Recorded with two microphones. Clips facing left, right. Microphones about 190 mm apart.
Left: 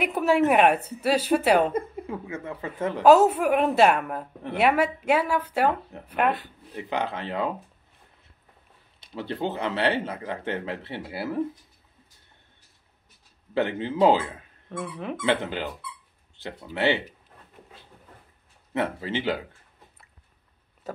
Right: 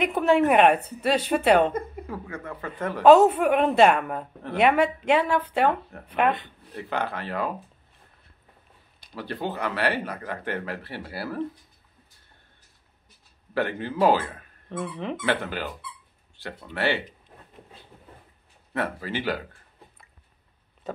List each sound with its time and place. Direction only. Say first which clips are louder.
0.0 s speech: right 1 dB; 5° left (ahead or behind)
1.7 s a woman's voice: left 2 dB; 25° left (ahead or behind)
3.0 s speech: right 2 dB; 5° left (ahead or behind); by 7.5 s 20° left (ahead or behind)
9.0 s speech: left 2 dB; 25° left (ahead or behind)
13.6 s speech: left 2 dB; 20° left (ahead or behind)
14.7 s speech: right 2 dB; centre (ahead or behind)
15.2 s speech: left 3 dB; 20° left (ahead or behind)
16.7 s speech: left 2 dB; 20° left (ahead or behind)
18.7 s speech: left 2 dB; 20° left (ahead or behind)